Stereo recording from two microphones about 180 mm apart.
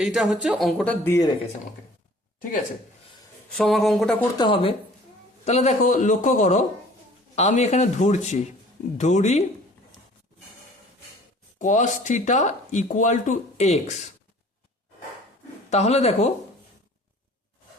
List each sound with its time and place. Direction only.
0.0 s speech: 5° right (ahead or behind); by 1.3 s 15° left (ahead or behind)
3.5 s speech: centre (ahead or behind)
4.4 s a man's voice: 30° left (ahead or behind)
11.6 s speech: 45° left (ahead or behind)
15.7 s a man's voice: 35° left (ahead or behind)